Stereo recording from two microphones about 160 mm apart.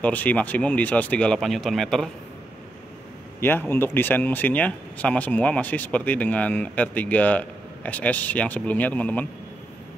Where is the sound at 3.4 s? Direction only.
15° left (ahead or behind).